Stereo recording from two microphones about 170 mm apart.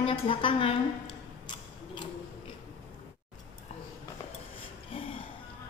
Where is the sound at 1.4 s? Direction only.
30° left (ahead or behind).